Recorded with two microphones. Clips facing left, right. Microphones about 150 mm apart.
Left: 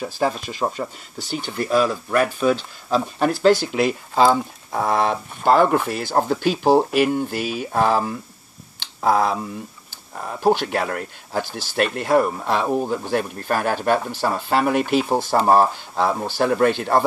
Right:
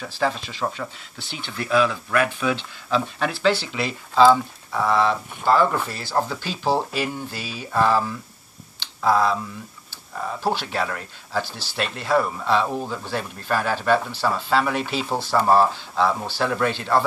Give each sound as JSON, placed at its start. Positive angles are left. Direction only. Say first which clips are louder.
{"t": 0.1, "sound": "speech", "louder": "right 1 dB", "side_deg": 45}
{"t": 8.7, "sound": "a sound", "louder": "left 1 dB", "side_deg": 50}
{"t": 10.5, "sound": "speech", "louder": "left 5 dB", "side_deg": 50}